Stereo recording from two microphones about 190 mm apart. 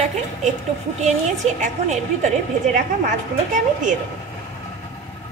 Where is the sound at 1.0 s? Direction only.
40° right (ahead or behind).